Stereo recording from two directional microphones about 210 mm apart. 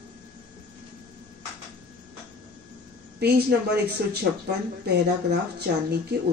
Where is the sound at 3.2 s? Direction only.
50° right (ahead or behind).